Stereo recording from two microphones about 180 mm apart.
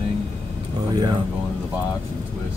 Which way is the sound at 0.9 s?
25° right (ahead or behind).